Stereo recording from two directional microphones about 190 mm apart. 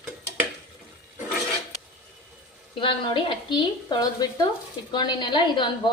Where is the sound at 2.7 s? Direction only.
25° left (ahead or behind).